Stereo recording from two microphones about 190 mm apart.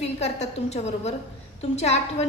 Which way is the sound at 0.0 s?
35° left (ahead or behind).